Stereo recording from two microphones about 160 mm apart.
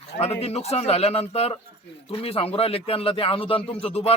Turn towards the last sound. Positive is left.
turn(degrees=40)  # may be behind; listen again after turning